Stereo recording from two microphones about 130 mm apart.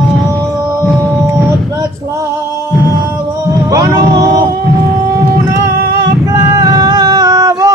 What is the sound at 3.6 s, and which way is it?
Music, 30° right (ahead or behind).